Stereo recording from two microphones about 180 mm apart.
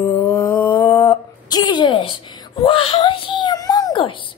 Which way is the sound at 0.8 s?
30° left (ahead or behind).